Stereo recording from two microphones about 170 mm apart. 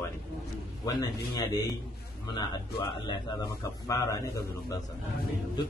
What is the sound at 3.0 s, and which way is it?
A man's voice, 25° left (ahead or behind).